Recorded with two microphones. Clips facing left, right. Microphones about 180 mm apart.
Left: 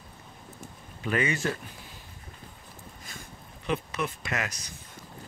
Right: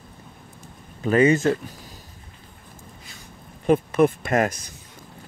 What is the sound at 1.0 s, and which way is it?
Speech, 40° right (ahead or behind).